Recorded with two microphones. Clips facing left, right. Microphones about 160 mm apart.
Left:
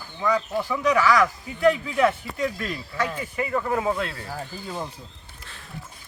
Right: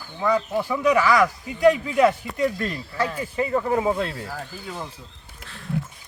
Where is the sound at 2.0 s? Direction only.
30° right (ahead or behind).